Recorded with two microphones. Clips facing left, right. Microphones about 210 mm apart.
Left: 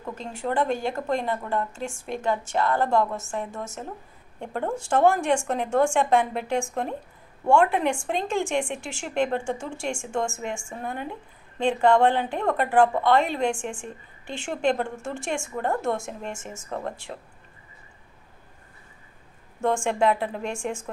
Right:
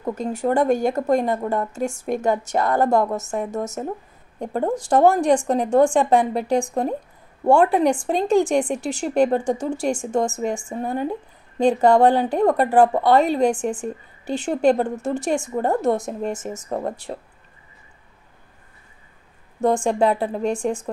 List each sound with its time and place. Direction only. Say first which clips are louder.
0.0 s a woman's voice: right 8 dB; 40° right (ahead or behind)
19.6 s a woman's voice: right 4 dB; 35° right (ahead or behind)